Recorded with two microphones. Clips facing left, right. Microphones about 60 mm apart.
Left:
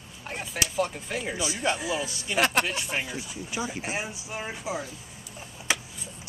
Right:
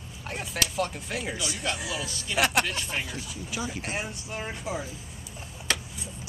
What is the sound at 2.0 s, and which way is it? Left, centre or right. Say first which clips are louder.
Speech: even; left.